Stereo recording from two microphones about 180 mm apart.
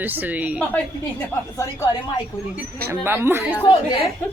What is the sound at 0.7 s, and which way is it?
A woman's voice, 10° left (ahead or behind).